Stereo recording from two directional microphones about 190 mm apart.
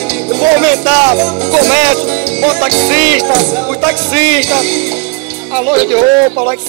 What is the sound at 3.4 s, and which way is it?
Speech, 10° right (ahead or behind).